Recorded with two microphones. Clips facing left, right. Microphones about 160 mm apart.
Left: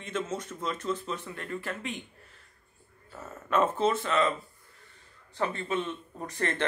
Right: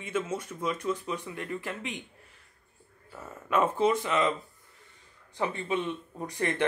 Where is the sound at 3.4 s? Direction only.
10° right (ahead or behind).